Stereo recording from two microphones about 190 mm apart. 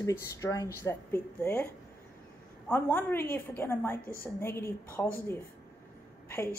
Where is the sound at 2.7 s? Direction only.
10° left (ahead or behind).